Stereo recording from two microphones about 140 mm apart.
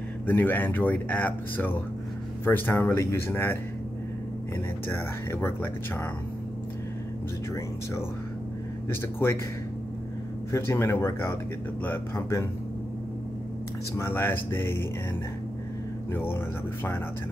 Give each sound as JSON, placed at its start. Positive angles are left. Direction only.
{"t": 0.3, "sound": "speech", "side_deg": 15}
{"t": 4.8, "sound": "speech", "side_deg": 15}
{"t": 8.8, "sound": "speech", "side_deg": 20}
{"t": 10.5, "sound": "speech", "side_deg": 20}
{"t": 13.9, "sound": "speech", "side_deg": 15}
{"t": 16.1, "sound": "speech", "side_deg": 15}